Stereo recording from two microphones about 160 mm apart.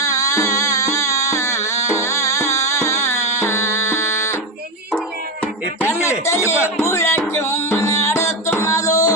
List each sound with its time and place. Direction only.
0.0 s music: 20° left (ahead or behind)
5.8 s music: 20° left (ahead or behind)